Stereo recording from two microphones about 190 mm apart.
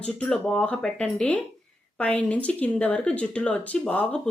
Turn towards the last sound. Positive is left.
turn(degrees=5)  # may be behind; listen again after turning